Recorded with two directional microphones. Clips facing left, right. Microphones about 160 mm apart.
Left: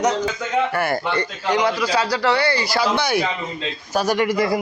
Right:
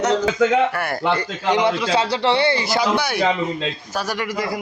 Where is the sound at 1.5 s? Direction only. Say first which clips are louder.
Right 2 dB; 25° right (ahead or behind).